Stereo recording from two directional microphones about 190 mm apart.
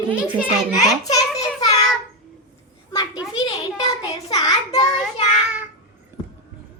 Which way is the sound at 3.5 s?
25° left (ahead or behind).